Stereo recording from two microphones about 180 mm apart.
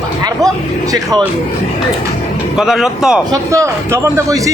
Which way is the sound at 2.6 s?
5° right (ahead or behind).